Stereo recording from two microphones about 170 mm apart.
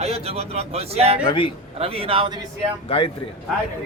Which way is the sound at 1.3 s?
30° left (ahead or behind).